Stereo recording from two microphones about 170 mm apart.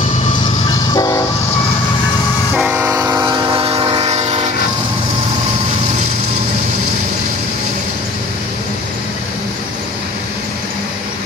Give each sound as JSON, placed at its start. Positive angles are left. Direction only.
{"t": 0.9, "sound": "train", "side_deg": 20}
{"t": 2.5, "sound": "train", "side_deg": -10}